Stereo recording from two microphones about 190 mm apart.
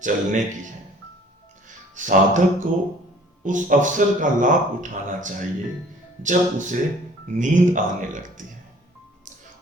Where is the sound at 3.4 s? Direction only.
40° right (ahead or behind).